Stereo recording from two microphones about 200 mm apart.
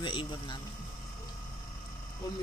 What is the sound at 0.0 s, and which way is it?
Speech, 25° left (ahead or behind).